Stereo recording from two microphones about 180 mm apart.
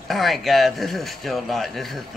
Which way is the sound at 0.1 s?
Centre (ahead or behind).